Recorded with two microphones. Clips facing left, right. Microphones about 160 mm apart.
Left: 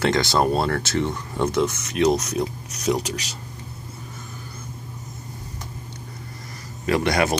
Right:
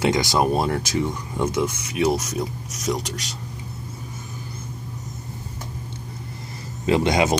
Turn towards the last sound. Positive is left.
turn(degrees=-20)  # may be behind; listen again after turning